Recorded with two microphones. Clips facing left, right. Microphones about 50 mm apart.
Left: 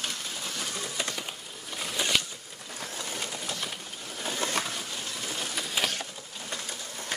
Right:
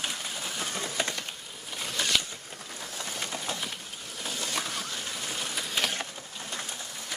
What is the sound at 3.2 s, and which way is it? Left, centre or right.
Train, right.